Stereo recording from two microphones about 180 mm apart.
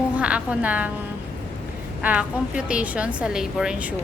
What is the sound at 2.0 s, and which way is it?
A woman's voice, 5° right (ahead or behind).